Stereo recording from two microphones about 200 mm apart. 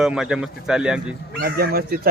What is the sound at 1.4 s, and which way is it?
Speech, 50° right (ahead or behind).